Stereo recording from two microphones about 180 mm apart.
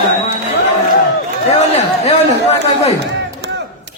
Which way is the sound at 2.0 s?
35° left (ahead or behind).